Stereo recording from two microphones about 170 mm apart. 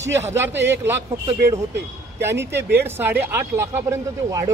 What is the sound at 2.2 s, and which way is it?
Speech, 15° right (ahead or behind).